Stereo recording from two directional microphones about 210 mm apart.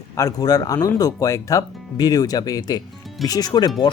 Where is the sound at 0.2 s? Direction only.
15° left (ahead or behind).